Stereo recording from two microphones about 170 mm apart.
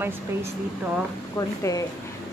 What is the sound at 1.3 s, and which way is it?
Speech, 20° left (ahead or behind).